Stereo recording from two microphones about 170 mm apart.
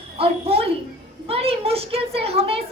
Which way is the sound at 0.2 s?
35° right (ahead or behind).